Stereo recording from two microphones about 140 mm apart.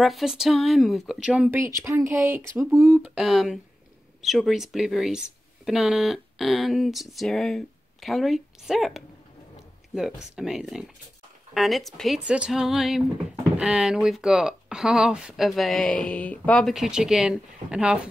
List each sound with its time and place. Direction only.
0.0 s speech: centre (ahead or behind)
1.7 s speech: 20° right (ahead or behind)
3.2 s speech: centre (ahead or behind)